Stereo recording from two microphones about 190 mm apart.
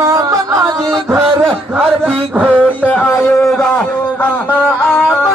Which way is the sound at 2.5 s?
10° left (ahead or behind).